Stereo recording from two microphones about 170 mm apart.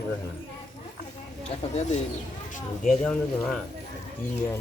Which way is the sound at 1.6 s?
40° left (ahead or behind).